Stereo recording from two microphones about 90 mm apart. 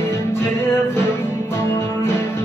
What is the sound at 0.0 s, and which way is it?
Music, 25° left (ahead or behind).